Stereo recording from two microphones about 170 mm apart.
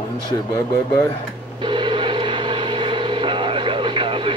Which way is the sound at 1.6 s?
30° right (ahead or behind).